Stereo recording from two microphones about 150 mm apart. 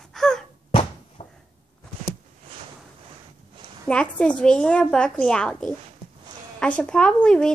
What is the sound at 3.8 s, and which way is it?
A woman's voice, 10° left (ahead or behind).